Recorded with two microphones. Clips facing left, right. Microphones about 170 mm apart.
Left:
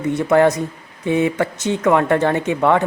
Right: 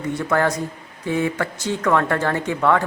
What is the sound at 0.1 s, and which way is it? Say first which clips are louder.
Speech: left 6 dB; 20° left (ahead or behind).